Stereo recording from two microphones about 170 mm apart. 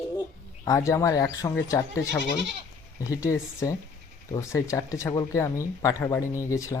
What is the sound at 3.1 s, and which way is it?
Speech, 20° left (ahead or behind).